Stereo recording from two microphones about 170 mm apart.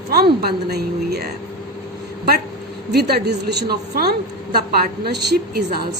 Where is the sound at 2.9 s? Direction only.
70° right (ahead or behind).